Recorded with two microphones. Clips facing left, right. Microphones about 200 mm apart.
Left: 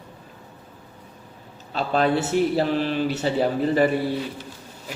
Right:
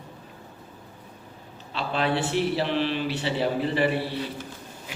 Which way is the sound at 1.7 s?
45° left (ahead or behind).